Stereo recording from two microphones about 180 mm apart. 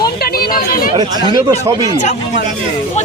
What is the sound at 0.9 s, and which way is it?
Speech, 30° right (ahead or behind).